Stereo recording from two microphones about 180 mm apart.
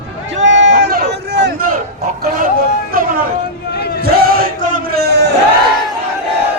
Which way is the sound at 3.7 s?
60° left (ahead or behind).